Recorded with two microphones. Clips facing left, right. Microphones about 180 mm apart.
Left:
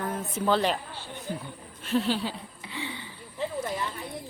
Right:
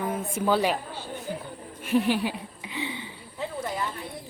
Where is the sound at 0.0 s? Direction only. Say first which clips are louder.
Right 2 dB; 10° right (ahead or behind).